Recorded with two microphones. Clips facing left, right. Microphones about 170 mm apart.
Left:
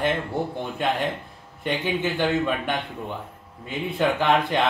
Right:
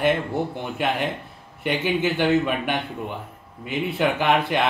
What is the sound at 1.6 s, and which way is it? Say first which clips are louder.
Speech: right 2 dB; 5° right (ahead or behind).